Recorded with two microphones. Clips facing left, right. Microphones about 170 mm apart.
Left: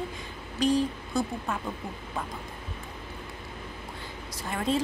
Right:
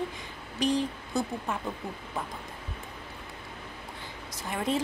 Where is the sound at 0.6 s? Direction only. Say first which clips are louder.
Left 3 dB; 20° right (ahead or behind).